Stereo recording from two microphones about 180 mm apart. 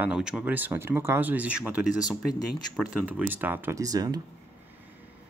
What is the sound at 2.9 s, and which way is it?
Speech, 5° right (ahead or behind).